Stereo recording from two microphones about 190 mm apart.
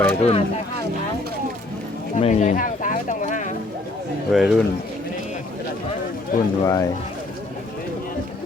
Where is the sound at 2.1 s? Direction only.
35° left (ahead or behind).